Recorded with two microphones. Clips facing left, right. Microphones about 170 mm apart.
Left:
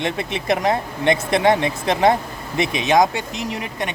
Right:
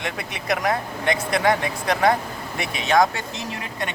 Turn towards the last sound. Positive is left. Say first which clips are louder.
# left 4 dB
turn(degrees=15)  # may be behind; listen again after turning